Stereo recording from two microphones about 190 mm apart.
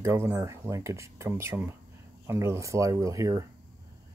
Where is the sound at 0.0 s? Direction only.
15° right (ahead or behind).